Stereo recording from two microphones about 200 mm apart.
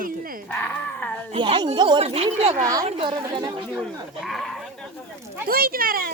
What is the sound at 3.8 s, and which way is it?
Speech, centre (ahead or behind).